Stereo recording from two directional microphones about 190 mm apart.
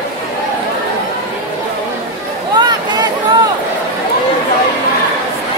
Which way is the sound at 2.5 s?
20° right (ahead or behind).